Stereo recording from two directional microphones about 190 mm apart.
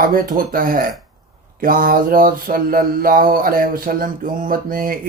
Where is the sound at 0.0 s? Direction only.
45° right (ahead or behind).